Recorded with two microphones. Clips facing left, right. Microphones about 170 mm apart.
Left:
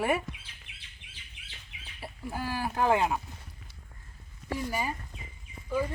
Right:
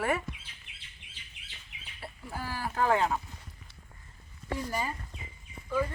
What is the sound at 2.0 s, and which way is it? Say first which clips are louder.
Speech: left 4 dB; 15° left (ahead or behind).